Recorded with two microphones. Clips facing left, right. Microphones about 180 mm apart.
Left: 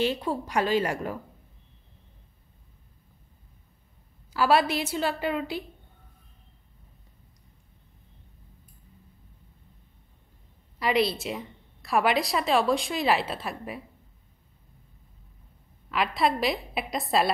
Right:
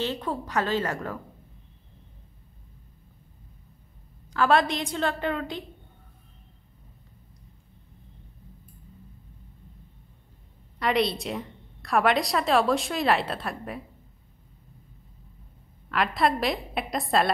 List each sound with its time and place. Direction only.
0.0 s a woman's voice: 10° left (ahead or behind)
4.3 s a woman's voice: 5° left (ahead or behind)
10.8 s a woman's voice: centre (ahead or behind)
15.9 s a woman's voice: centre (ahead or behind)